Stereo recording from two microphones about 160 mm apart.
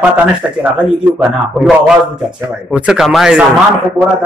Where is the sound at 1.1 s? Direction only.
5° right (ahead or behind).